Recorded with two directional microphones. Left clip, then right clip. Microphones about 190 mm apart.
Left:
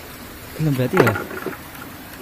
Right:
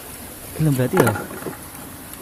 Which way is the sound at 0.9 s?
20° right (ahead or behind).